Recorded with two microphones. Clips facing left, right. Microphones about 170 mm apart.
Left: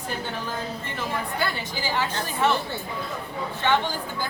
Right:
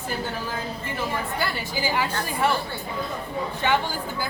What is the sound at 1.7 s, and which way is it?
Speech, 10° right (ahead or behind).